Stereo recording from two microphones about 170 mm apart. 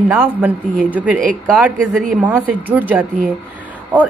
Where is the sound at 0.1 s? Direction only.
10° right (ahead or behind).